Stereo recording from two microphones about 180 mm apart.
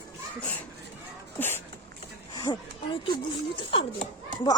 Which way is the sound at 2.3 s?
20° left (ahead or behind).